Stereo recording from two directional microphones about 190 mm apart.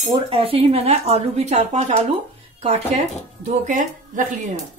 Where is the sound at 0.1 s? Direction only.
30° right (ahead or behind).